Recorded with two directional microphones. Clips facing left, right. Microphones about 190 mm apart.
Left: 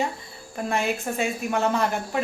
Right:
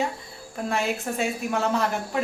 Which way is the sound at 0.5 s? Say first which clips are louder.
Left 1 dB; centre (ahead or behind).